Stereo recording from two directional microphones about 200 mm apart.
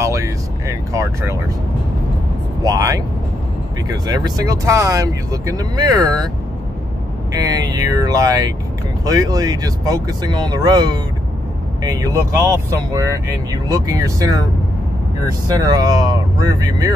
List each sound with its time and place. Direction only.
0.0 s vehicle: 15° right (ahead or behind)
2.6 s speech: 15° right (ahead or behind)
7.3 s speech: 20° right (ahead or behind)
15.6 s speech: 20° right (ahead or behind)